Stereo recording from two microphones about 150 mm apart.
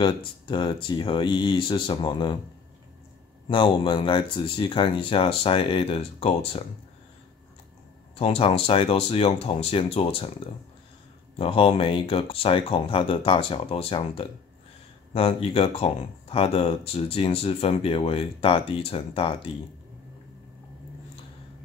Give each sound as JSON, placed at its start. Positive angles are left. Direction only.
{"t": 0.0, "sound": "speech", "side_deg": 30}
{"t": 3.4, "sound": "speech", "side_deg": 35}
{"t": 8.2, "sound": "speech", "side_deg": 40}
{"t": 11.3, "sound": "speech", "side_deg": 35}